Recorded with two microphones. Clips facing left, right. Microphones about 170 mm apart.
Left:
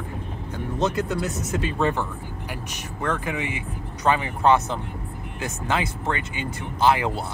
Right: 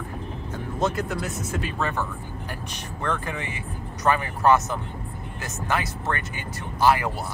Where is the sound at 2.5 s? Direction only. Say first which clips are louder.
Left 1 dB; 10° left (ahead or behind).